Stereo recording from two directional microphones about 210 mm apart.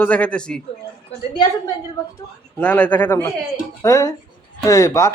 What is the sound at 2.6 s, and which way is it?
Speech, 5° left (ahead or behind).